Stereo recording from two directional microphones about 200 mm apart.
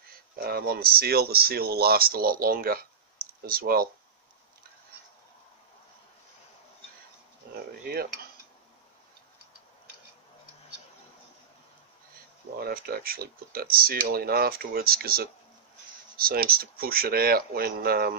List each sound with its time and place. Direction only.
0.4 s speech: 50° right (ahead or behind)
7.8 s cutlery: 50° right (ahead or behind)
12.5 s speech: 50° right (ahead or behind)